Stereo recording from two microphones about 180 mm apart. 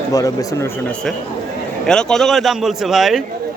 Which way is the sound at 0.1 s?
20° left (ahead or behind).